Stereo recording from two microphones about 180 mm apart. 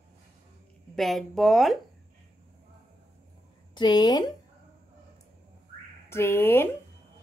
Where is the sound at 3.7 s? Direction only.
25° left (ahead or behind).